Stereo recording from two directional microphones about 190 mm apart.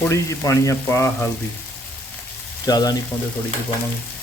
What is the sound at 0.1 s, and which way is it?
Speech, 15° left (ahead or behind).